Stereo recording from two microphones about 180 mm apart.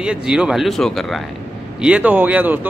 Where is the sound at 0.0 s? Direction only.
5° right (ahead or behind).